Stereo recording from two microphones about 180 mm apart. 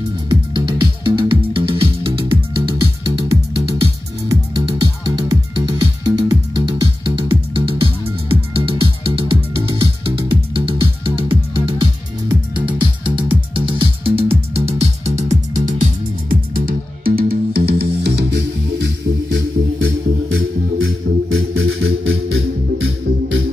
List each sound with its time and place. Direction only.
0.3 s music: 25° right (ahead or behind)
2.7 s music: 20° right (ahead or behind); by 18.1 s 60° right (ahead or behind)
19.8 s music: 90° right